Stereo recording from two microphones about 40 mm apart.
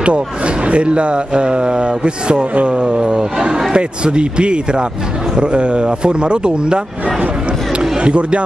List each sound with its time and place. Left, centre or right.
0.7 s speech: right
8.0 s speech: right